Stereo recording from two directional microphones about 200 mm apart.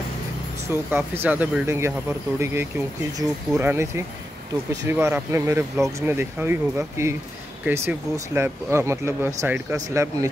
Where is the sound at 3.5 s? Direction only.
10° right (ahead or behind).